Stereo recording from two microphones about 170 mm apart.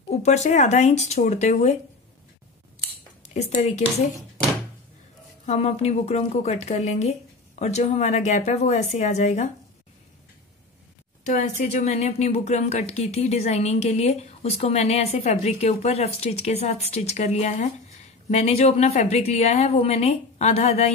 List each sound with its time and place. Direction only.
0.1 s speech: 40° left (ahead or behind)
3.2 s speech: 40° left (ahead or behind)
5.4 s speech: 40° left (ahead or behind)
11.2 s speech: 45° left (ahead or behind)